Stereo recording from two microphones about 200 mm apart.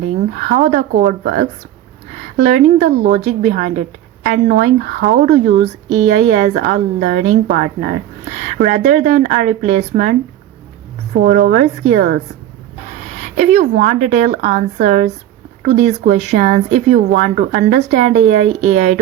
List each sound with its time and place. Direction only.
0.3 s a woman's voice: 40° right (ahead or behind)
6.1 s a woman's voice: 40° right (ahead or behind)
13.2 s a woman's voice: 35° right (ahead or behind)